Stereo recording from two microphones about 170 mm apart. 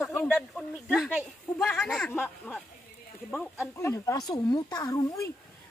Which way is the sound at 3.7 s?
15° left (ahead or behind).